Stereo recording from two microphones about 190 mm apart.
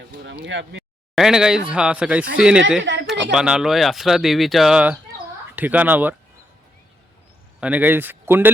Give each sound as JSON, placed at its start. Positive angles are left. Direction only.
{"t": 0.4, "sound": "speech", "side_deg": -70}
{"t": 1.1, "sound": "speech", "side_deg": 0}
{"t": 2.8, "sound": "speech", "side_deg": -70}
{"t": 3.3, "sound": "speech", "side_deg": -5}
{"t": 7.6, "sound": "speech", "side_deg": -10}